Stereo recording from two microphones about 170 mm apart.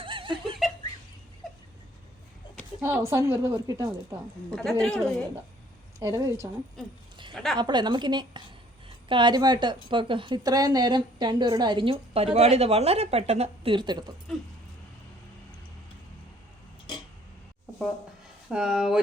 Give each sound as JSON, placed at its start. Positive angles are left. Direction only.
{"t": 0.0, "sound": "laughter", "side_deg": -30}
{"t": 2.8, "sound": "a woman's voice", "side_deg": -15}
{"t": 4.8, "sound": "speech", "side_deg": 5}
{"t": 6.0, "sound": "a woman's voice", "side_deg": -20}
{"t": 7.3, "sound": "speech", "side_deg": 0}
{"t": 7.6, "sound": "a woman's voice", "side_deg": -25}
{"t": 14.3, "sound": "speech", "side_deg": 0}
{"t": 16.9, "sound": "a sound", "side_deg": 25}
{"t": 18.4, "sound": "speech", "side_deg": -5}